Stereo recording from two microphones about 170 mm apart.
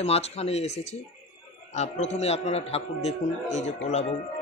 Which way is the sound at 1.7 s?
40° left (ahead or behind).